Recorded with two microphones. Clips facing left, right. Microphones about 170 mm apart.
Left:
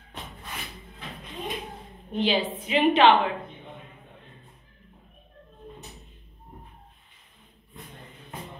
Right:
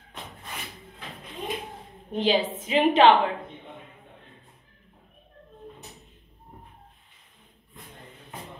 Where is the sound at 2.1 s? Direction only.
40° right (ahead or behind).